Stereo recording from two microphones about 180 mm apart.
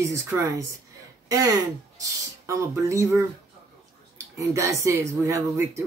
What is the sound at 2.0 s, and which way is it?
Speech, 15° right (ahead or behind).